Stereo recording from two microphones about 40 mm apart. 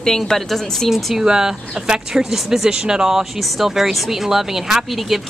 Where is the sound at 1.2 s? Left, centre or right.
Centre.